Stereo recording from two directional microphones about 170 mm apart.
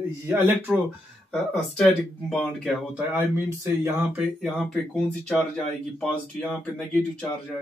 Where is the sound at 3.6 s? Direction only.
15° right (ahead or behind).